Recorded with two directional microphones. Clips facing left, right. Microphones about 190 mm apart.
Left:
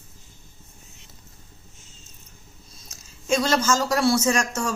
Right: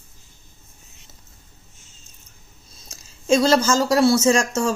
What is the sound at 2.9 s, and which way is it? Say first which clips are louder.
Speech: right 5 dB; 30° right (ahead or behind).